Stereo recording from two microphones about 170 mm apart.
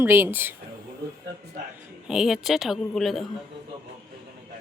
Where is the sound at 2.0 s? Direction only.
5° right (ahead or behind).